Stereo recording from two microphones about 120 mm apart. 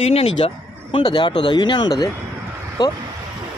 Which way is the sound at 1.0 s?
40° left (ahead or behind).